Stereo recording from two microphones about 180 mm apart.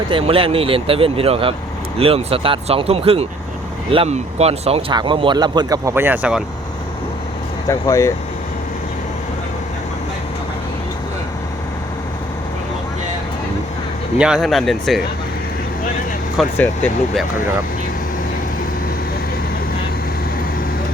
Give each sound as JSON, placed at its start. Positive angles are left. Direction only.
{"t": 0.1, "sound": "speech", "side_deg": -30}
{"t": 7.7, "sound": "speech", "side_deg": 20}
{"t": 14.2, "sound": "speech", "side_deg": -5}
{"t": 16.4, "sound": "speech", "side_deg": 0}